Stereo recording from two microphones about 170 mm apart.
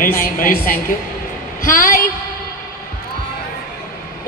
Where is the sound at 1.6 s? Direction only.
55° left (ahead or behind).